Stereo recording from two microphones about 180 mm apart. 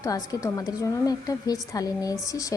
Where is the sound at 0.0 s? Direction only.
20° left (ahead or behind).